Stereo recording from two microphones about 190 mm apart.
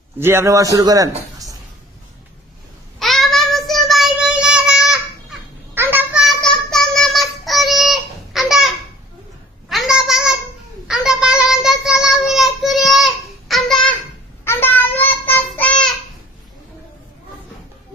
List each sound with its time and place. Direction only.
0.2 s a man's voice: 15° right (ahead or behind)
3.0 s child singing: centre (ahead or behind)
9.6 s a sound: centre (ahead or behind)
10.8 s child singing: 5° right (ahead or behind)
14.4 s child singing: 10° left (ahead or behind)